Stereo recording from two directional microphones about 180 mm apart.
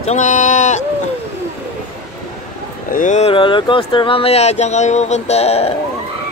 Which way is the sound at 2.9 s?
45° left (ahead or behind).